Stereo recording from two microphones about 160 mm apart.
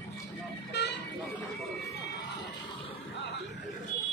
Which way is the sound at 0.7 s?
90° left.